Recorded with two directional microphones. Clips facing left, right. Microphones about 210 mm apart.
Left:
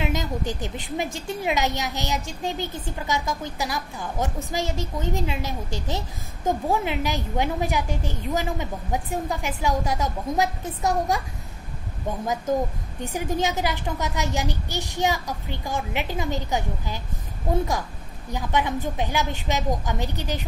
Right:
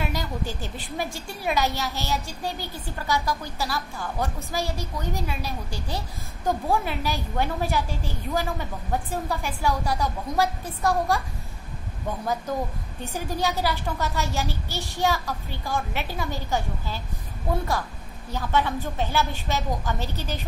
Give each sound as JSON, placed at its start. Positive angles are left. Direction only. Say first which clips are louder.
{"t": 0.0, "sound": "a woman's voice", "louder": "left 3 dB", "side_deg": 20}
{"t": 13.0, "sound": "a child's voice", "louder": "left 2 dB", "side_deg": 15}
{"t": 18.3, "sound": "a child's voice", "louder": "even", "side_deg": 15}